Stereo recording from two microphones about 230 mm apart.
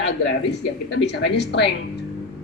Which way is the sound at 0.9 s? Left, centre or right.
Left.